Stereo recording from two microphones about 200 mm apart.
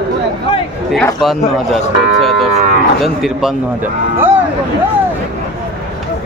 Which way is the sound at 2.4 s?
35° right (ahead or behind).